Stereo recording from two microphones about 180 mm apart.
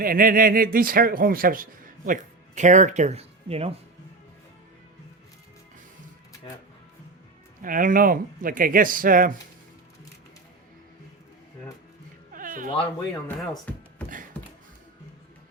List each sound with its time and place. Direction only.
0.0 s speech: 55° right (ahead or behind); by 3.7 s 35° right (ahead or behind)
7.6 s speech: 50° right (ahead or behind)
12.3 s a sound: 50° right (ahead or behind)
13.2 s speech: 5° left (ahead or behind)